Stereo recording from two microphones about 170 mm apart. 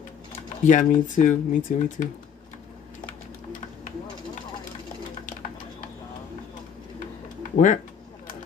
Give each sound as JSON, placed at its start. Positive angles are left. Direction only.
{"t": 0.7, "sound": "speech", "side_deg": 50}
{"t": 7.5, "sound": "speech", "side_deg": 45}